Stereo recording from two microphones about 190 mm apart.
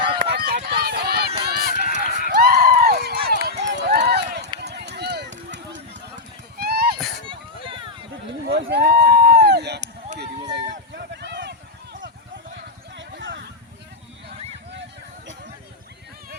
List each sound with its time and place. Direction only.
0.3 s run: 55° right (ahead or behind)
1.5 s a sound: 55° right (ahead or behind)
1.9 s run: 45° right (ahead or behind); by 6.0 s 70° right (ahead or behind)
6.6 s horse: 55° right (ahead or behind)
7.3 s children playing: 25° right (ahead or behind)
8.5 s a sound: 55° right (ahead or behind)